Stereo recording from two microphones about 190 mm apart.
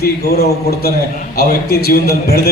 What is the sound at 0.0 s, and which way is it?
A man's voice, 55° left (ahead or behind).